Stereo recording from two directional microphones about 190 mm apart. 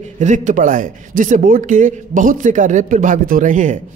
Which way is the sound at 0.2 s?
40° right (ahead or behind).